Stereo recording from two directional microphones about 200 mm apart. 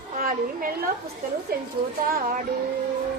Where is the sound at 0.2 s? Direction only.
45° right (ahead or behind).